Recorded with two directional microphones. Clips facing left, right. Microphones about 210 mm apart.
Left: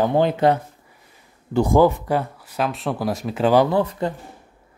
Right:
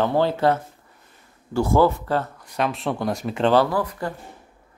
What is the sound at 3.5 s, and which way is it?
Speech, 20° left (ahead or behind).